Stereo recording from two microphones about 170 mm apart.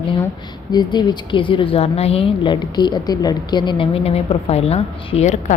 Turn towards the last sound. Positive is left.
turn(degrees=40)  # may be behind; listen again after turning